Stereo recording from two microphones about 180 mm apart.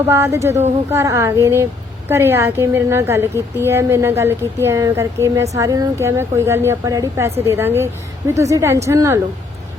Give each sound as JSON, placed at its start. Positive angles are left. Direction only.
{"t": 0.1, "sound": "a woman's voice", "side_deg": -15}